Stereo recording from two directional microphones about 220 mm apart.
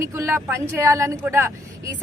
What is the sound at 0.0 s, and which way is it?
A woman's voice, 10° right (ahead or behind).